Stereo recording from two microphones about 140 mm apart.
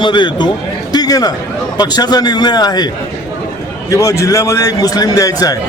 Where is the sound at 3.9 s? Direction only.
25° left (ahead or behind).